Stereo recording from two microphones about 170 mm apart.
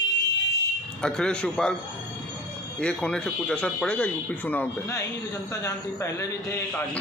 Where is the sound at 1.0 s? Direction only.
5° left (ahead or behind).